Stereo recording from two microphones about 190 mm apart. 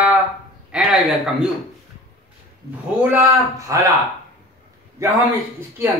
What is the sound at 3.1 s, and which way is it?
Speech, 15° right (ahead or behind).